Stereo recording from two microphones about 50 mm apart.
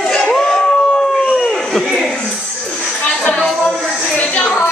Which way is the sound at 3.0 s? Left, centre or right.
Left.